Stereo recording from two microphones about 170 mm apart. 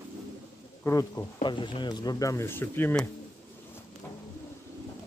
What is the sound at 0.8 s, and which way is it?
Speech, 15° left (ahead or behind).